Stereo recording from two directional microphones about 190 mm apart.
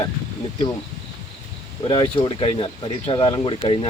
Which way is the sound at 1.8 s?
25° left (ahead or behind).